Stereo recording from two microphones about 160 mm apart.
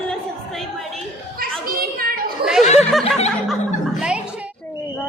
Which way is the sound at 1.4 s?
65° right (ahead or behind).